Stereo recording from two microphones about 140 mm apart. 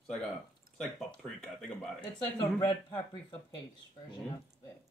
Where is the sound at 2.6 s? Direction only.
30° left (ahead or behind).